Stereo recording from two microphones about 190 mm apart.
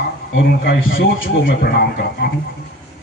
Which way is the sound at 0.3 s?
80° left.